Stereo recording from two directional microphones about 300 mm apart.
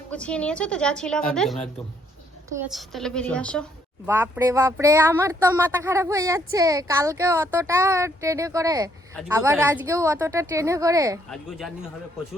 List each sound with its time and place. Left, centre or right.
0.1 s a woman's voice: centre
2.6 s a woman's voice: centre
4.0 s speech: centre
11.3 s a woman's voice: centre